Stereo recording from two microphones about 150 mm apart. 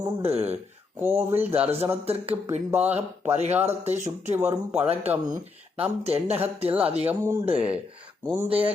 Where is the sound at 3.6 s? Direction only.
45° right (ahead or behind).